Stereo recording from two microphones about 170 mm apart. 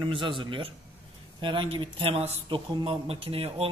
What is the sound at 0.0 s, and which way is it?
Speech, 30° right (ahead or behind).